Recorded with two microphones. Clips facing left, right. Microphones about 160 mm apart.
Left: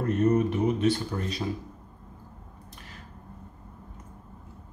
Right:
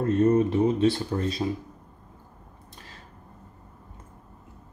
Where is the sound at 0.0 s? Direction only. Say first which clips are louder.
Right 3 dB; 30° right (ahead or behind).